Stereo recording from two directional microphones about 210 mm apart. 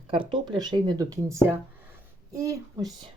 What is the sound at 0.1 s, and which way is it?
Speech, 25° right (ahead or behind).